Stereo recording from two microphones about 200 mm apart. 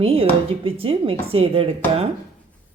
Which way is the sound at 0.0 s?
30° right (ahead or behind).